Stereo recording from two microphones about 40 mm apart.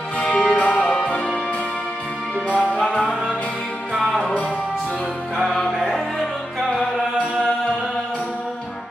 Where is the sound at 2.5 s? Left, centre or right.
Left.